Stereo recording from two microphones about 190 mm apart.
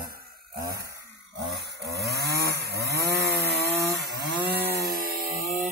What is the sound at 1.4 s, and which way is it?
Chainsaw, 60° right (ahead or behind).